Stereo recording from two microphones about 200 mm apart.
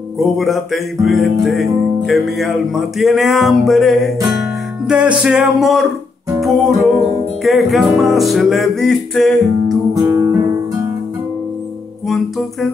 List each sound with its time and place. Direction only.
0.2 s music: centre (ahead or behind)
9.9 s guitar: 15° right (ahead or behind)